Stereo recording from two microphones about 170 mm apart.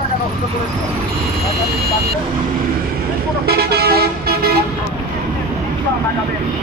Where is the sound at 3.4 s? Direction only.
70° right (ahead or behind).